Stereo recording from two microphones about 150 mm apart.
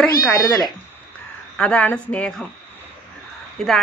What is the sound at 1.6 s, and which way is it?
Speech, 10° left (ahead or behind).